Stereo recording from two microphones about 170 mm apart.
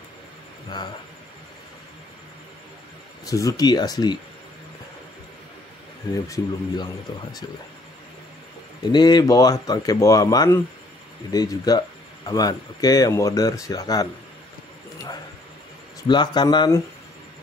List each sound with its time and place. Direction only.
3.3 s speech: 20° left (ahead or behind)
6.2 s speech: 20° left (ahead or behind)
8.9 s speech: 25° left (ahead or behind)
16.1 s speech: 25° left (ahead or behind)